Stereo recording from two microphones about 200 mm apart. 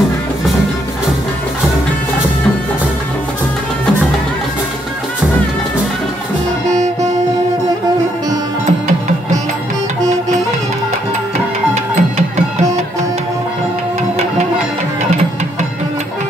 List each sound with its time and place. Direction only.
11.7 s music: 35° right (ahead or behind)